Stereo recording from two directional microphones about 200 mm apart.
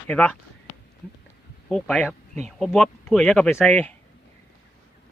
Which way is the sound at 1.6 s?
5° left (ahead or behind).